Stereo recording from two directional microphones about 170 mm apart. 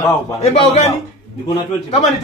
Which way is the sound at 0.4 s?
40° left (ahead or behind).